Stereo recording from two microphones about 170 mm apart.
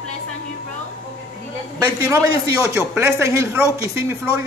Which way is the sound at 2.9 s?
15° right (ahead or behind).